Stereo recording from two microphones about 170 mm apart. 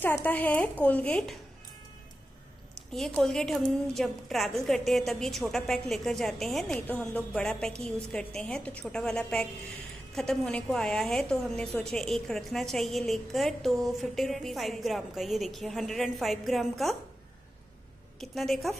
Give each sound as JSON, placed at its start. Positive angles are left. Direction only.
{"t": 0.0, "sound": "a woman's voice", "side_deg": 10}
{"t": 2.9, "sound": "a woman's voice", "side_deg": 0}
{"t": 18.2, "sound": "a woman's voice", "side_deg": 0}